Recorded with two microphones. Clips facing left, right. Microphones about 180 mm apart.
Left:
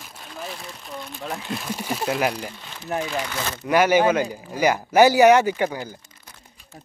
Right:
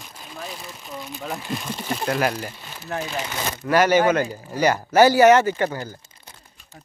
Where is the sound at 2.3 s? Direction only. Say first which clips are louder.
Right 1 dB; 5° right (ahead or behind).